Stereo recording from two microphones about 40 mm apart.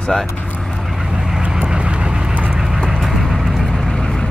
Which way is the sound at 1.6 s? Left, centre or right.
Right.